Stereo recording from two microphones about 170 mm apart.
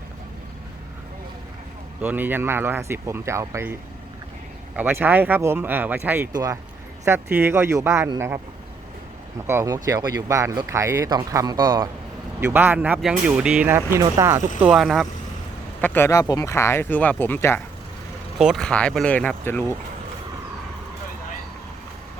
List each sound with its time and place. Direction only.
2.0 s speech: 10° right (ahead or behind)
4.8 s speech: 10° right (ahead or behind)
6.3 s speech: 20° right (ahead or behind)
9.5 s speech: 20° right (ahead or behind)
12.4 s speech: 10° right (ahead or behind)
14.6 s speech: centre (ahead or behind)
15.8 s speech: 10° left (ahead or behind)
18.3 s speech: centre (ahead or behind)